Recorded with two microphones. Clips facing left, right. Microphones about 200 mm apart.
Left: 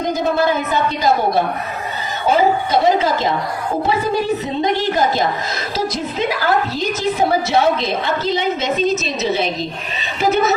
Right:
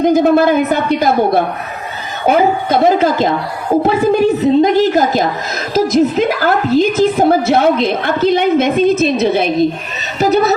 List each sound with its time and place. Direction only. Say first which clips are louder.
0.1 s a woman's voice: right 4 dB; 55° right (ahead or behind)
10.2 s a woman's voice: right 4 dB; 40° right (ahead or behind)